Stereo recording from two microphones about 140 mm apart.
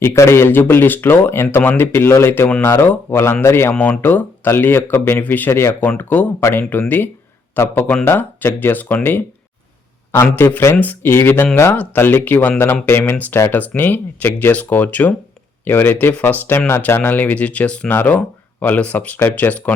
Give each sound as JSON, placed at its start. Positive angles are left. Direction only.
{"t": 0.0, "sound": "speech", "side_deg": 20}
{"t": 10.2, "sound": "speech", "side_deg": 15}